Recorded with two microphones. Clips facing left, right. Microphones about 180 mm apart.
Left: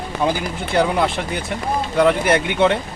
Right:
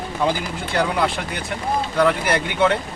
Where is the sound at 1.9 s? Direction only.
20° left (ahead or behind).